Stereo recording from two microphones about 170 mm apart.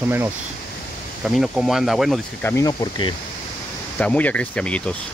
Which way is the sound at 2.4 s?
20° left (ahead or behind).